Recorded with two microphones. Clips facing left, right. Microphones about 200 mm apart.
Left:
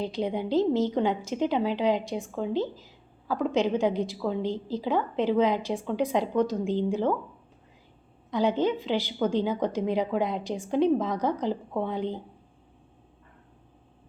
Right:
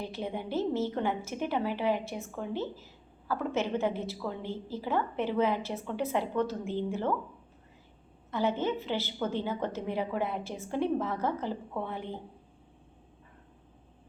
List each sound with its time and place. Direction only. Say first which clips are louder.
0.0 s a woman's voice: left 7 dB; 15° left (ahead or behind)
8.3 s a woman's voice: left 5 dB; 15° left (ahead or behind)